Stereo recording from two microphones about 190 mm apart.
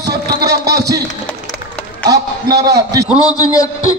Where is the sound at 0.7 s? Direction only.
20° right (ahead or behind).